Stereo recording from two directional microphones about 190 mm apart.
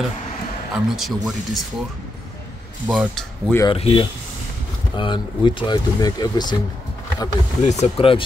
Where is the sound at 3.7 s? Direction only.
30° left (ahead or behind).